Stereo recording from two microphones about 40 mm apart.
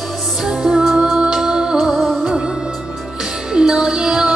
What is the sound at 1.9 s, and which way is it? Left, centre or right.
Music, centre.